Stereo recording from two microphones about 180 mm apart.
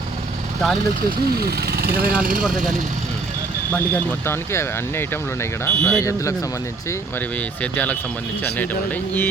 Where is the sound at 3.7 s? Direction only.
10° left (ahead or behind).